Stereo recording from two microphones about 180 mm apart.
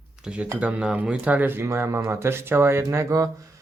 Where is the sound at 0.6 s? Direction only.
5° right (ahead or behind).